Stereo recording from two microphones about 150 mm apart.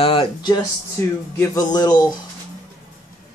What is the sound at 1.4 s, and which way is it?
Speech, 25° left (ahead or behind).